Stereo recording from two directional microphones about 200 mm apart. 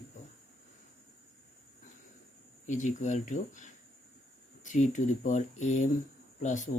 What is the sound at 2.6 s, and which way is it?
Speech, 40° left (ahead or behind).